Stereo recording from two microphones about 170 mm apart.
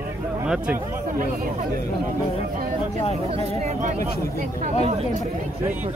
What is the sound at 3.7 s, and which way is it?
Speech, 45° right (ahead or behind).